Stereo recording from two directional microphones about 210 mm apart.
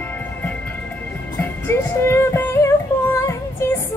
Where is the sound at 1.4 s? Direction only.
10° left (ahead or behind).